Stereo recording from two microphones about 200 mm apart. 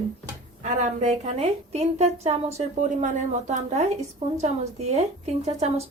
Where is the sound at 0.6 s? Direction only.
35° right (ahead or behind).